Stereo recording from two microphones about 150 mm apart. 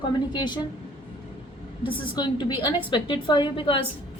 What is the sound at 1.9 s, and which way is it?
A woman's voice, 30° left (ahead or behind).